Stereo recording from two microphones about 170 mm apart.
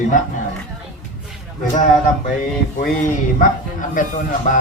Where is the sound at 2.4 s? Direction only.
50° left (ahead or behind).